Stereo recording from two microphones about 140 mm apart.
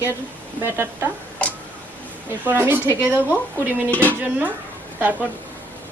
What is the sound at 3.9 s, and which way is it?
Speech, 10° left (ahead or behind).